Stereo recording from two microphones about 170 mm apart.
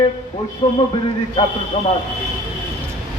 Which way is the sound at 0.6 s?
35° left (ahead or behind).